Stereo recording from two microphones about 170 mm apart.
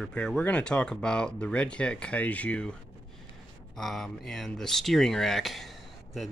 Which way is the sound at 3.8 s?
Centre (ahead or behind).